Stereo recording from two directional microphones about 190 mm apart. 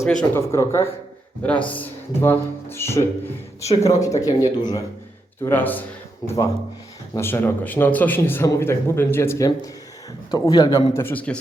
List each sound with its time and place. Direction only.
0.0 s a man's voice: 5° left (ahead or behind); by 4.8 s 20° left (ahead or behind)
5.4 s a man's voice: 10° left (ahead or behind)